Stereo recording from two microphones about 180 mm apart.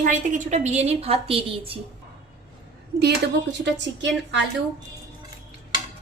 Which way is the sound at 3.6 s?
75° right (ahead or behind).